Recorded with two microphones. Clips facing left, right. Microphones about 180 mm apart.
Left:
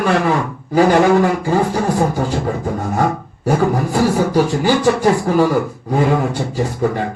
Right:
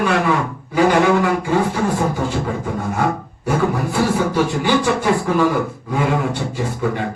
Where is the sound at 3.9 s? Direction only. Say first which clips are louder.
Left 4 dB; 40° left (ahead or behind).